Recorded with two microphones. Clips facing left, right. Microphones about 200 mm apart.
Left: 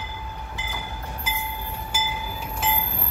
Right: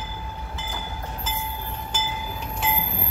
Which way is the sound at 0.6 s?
15° left (ahead or behind).